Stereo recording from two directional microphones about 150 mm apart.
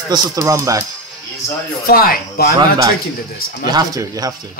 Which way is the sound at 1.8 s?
75° left (ahead or behind).